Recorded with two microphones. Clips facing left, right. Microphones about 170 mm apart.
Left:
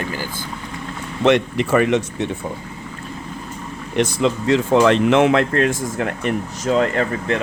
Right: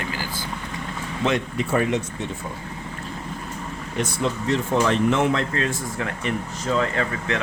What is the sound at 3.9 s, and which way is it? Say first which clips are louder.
Speech: left 7 dB; 90° left.